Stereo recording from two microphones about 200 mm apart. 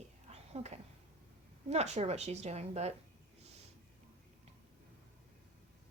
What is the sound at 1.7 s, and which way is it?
A woman's voice, 35° right (ahead or behind).